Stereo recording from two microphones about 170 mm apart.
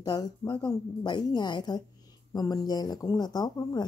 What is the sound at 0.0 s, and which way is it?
Speech, 25° left (ahead or behind).